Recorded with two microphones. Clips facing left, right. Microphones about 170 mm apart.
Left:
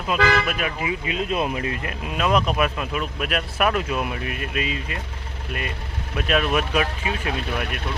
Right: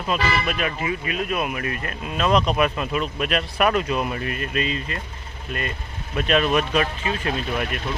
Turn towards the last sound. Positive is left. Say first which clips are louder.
# right 2 dB
turn(degrees=0)  # may be behind; listen again after turning